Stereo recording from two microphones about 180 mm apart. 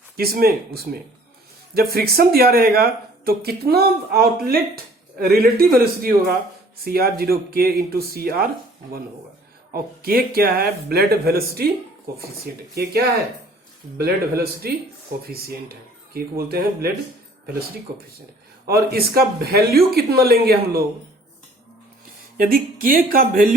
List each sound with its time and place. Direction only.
0.2 s speech: 55° right (ahead or behind)
9.7 s speech: 55° right (ahead or behind)
14.0 s speech: 60° right (ahead or behind)
18.6 s speech: 60° right (ahead or behind)
22.4 s speech: 55° right (ahead or behind)